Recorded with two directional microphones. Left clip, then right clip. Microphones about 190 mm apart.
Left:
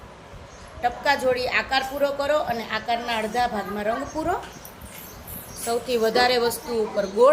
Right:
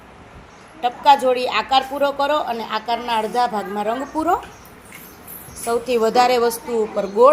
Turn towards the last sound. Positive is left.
turn(degrees=-10)  # may be behind; listen again after turning